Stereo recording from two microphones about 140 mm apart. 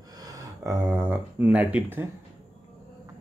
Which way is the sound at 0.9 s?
10° right (ahead or behind).